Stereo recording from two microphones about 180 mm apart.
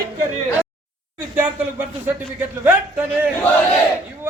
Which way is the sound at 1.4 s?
10° right (ahead or behind).